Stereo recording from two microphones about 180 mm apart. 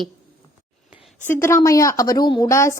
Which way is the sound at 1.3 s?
15° left (ahead or behind).